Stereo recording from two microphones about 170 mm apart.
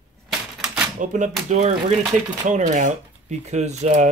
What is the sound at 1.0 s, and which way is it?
Speech, 45° right (ahead or behind).